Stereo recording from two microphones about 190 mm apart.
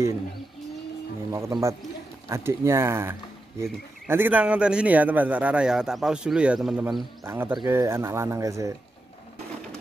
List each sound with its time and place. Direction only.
1.3 s speech: 15° right (ahead or behind)